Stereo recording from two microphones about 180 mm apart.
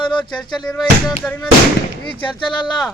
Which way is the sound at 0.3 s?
25° left (ahead or behind).